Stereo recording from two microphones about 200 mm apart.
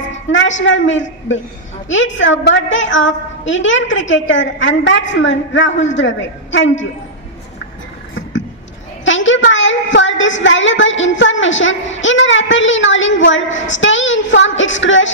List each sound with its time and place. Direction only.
0.1 s a woman's voice: 70° left (ahead or behind)
9.0 s a woman's voice: 70° left (ahead or behind)